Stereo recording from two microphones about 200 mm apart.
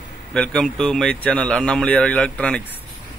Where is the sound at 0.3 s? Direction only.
5° left (ahead or behind).